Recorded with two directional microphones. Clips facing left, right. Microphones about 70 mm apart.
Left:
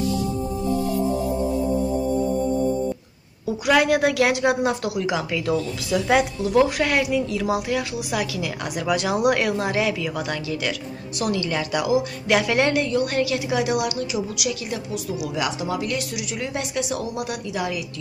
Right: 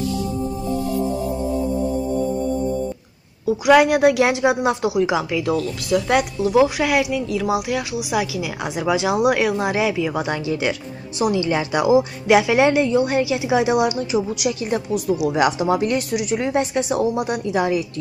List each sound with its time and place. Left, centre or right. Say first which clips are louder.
3.6 s speech: right 5 dB; centre; by 12.0 s right
12.3 s a woman's voice: right 5 dB; centre; by 17.8 s right